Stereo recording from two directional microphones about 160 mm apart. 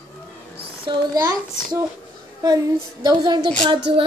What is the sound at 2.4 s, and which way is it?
A child's voice, 25° right (ahead or behind).